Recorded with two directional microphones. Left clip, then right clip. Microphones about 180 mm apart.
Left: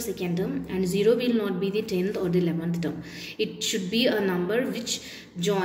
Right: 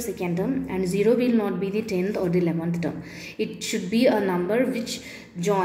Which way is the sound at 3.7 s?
30° right (ahead or behind).